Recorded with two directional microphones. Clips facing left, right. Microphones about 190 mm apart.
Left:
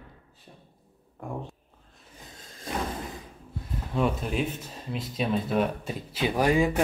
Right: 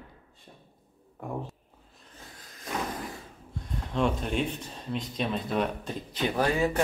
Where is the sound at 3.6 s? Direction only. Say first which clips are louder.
Left 1 dB; 5° left (ahead or behind).